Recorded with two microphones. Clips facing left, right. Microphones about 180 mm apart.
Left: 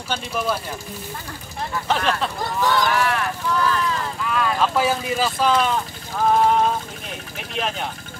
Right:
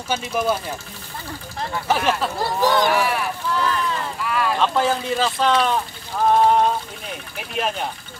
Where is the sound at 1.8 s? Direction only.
10° right (ahead or behind).